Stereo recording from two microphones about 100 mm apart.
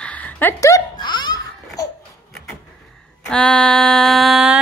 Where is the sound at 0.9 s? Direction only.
50° left (ahead or behind).